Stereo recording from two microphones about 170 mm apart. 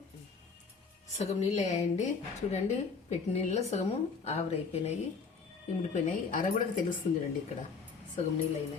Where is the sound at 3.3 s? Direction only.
40° left (ahead or behind).